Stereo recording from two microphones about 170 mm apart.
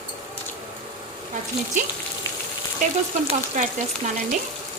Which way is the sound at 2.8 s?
45° right (ahead or behind).